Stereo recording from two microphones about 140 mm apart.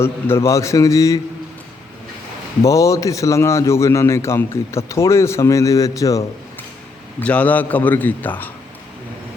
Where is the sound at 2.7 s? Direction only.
25° left (ahead or behind).